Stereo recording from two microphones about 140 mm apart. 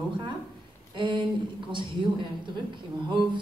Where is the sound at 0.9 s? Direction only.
35° right (ahead or behind).